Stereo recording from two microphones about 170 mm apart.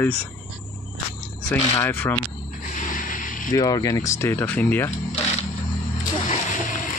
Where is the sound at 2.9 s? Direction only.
55° left (ahead or behind).